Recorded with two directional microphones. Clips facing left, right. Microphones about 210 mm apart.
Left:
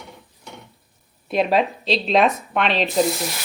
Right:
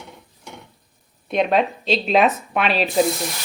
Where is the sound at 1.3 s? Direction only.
Centre (ahead or behind).